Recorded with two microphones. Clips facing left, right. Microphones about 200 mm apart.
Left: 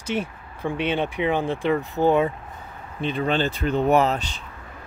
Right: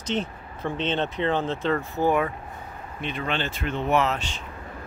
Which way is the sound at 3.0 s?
35° left (ahead or behind).